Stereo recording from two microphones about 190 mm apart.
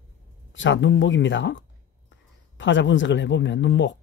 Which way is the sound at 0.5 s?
75° left (ahead or behind).